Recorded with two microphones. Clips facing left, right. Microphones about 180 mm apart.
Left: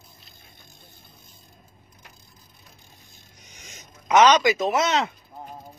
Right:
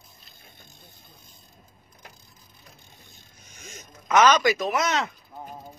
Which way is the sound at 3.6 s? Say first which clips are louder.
Right 4 dB; 20° left (ahead or behind).